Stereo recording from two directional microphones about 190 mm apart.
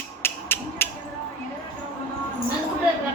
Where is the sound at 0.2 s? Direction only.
10° left (ahead or behind).